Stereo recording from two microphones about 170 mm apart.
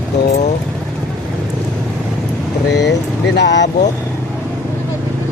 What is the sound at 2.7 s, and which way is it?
Vehicle, 90° left.